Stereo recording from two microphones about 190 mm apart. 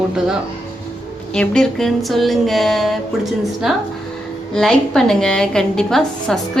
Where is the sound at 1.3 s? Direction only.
5° left (ahead or behind).